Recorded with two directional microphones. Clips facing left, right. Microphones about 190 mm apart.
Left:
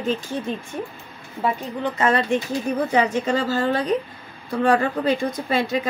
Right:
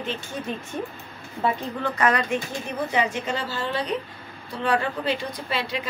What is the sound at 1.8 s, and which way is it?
Speech, 25° left (ahead or behind).